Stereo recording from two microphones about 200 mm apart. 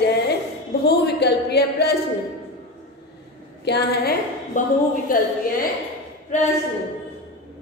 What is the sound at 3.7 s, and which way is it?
Speech, 55° left (ahead or behind).